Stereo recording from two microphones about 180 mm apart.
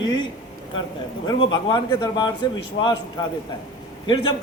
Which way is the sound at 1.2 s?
25° left (ahead or behind).